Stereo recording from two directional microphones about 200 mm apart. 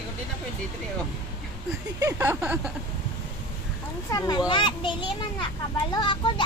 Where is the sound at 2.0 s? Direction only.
15° right (ahead or behind).